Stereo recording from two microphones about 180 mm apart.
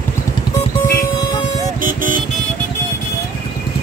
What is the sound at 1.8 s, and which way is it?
Vehicle, 50° right (ahead or behind).